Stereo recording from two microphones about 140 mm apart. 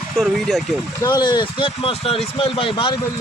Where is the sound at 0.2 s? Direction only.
Centre (ahead or behind).